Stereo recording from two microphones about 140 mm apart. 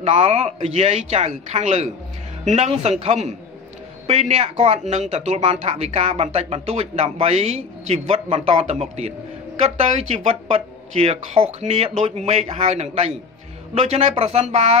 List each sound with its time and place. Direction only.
0.0 s speech: 50° right (ahead or behind)